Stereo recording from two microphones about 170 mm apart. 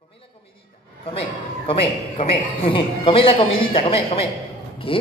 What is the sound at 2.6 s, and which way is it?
A woman's voice, 30° left (ahead or behind).